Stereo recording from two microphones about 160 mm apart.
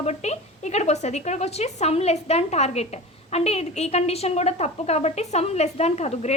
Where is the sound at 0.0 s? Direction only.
45° left (ahead or behind).